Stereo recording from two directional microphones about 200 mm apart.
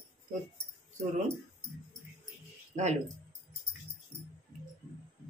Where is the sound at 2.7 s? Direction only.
35° right (ahead or behind).